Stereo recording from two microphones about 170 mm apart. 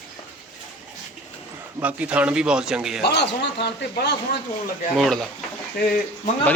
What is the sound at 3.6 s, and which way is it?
Speech, 75° left (ahead or behind).